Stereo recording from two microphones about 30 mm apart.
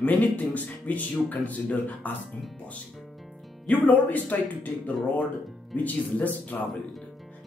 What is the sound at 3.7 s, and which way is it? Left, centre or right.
Speech, left.